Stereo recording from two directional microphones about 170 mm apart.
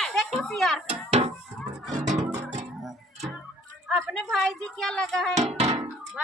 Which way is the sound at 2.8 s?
Centre (ahead or behind).